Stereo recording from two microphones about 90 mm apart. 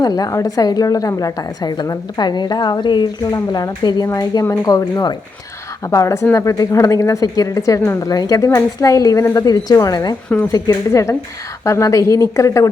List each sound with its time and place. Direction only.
0.0 s a woman's voice: 45° left (ahead or behind)
3.3 s a woman's voice: 45° left (ahead or behind)
5.9 s a woman's voice: 35° left (ahead or behind)